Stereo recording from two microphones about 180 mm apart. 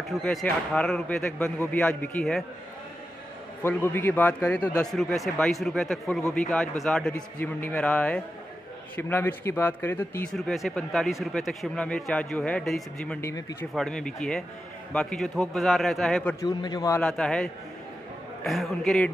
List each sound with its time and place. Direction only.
0.2 s speech: 5° left (ahead or behind)
3.6 s a man's voice: 10° left (ahead or behind)
10.3 s speech: centre (ahead or behind)
13.3 s a man's voice: 20° left (ahead or behind)
13.7 s speech: 5° left (ahead or behind)
16.3 s a man's voice: 20° left (ahead or behind)
17.0 s speech: 5° left (ahead or behind)